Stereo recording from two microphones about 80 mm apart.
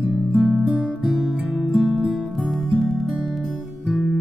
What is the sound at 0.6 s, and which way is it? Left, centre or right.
Guitar, centre.